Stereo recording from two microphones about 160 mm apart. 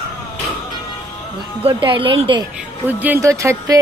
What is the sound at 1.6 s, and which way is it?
Speech, 30° right (ahead or behind).